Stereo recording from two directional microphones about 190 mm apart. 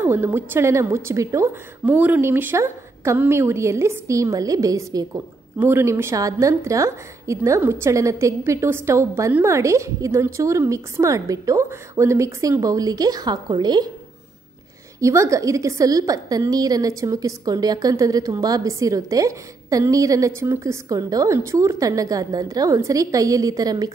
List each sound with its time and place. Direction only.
0.0 s a woman's voice: 10° right (ahead or behind)
15.0 s a woman's voice: 15° right (ahead or behind)